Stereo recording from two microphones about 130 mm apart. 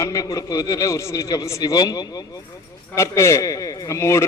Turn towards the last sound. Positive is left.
turn(degrees=20)  # may be behind; listen again after turning